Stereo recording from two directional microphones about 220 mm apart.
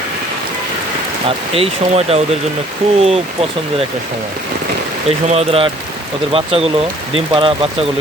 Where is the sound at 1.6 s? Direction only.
30° right (ahead or behind).